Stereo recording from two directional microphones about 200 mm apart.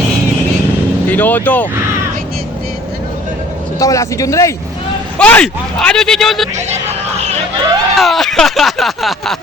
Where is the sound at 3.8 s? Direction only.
15° left (ahead or behind); by 6.4 s centre (ahead or behind).